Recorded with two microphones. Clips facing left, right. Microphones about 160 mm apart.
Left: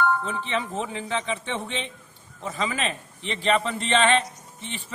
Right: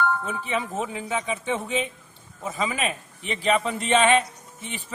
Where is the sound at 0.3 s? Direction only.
10° right (ahead or behind).